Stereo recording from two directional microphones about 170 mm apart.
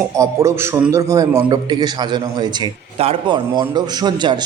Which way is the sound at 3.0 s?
30° right (ahead or behind).